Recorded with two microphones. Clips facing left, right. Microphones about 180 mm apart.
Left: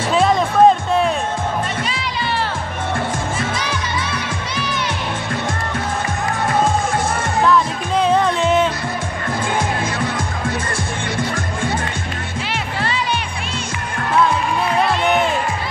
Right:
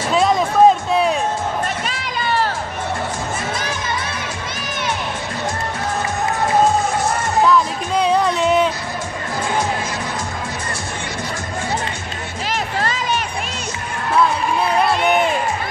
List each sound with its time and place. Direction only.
0.1 s music: centre (ahead or behind)
1.9 s music: 45° right (ahead or behind)
7.4 s music: centre (ahead or behind)
12.8 s music: 40° right (ahead or behind)